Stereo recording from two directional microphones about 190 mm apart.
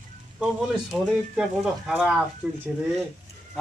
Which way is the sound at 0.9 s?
Centre (ahead or behind).